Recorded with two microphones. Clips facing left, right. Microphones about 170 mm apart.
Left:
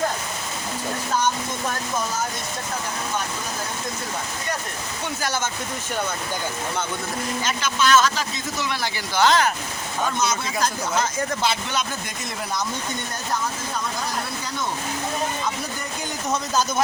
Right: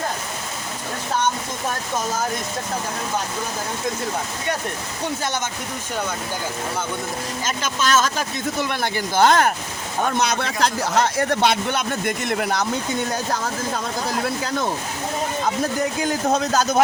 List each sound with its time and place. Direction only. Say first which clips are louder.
7.4 s speech: even; 45° right (ahead or behind)
10.2 s speech: right 3 dB; 65° right (ahead or behind)
15.8 s speech: right 9 dB; 90° right
16.2 s speech: right 3 dB; 65° right (ahead or behind)